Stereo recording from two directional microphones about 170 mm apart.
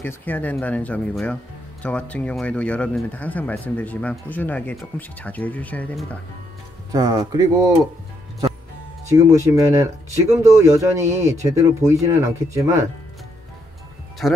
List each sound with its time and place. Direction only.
0.0 s speech: 10° left (ahead or behind)
6.9 s speech: 20° right (ahead or behind)
9.1 s speech: 20° right (ahead or behind)
14.2 s speech: centre (ahead or behind)